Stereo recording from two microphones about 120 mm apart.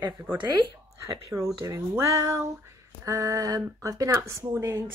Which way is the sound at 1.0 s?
25° right (ahead or behind).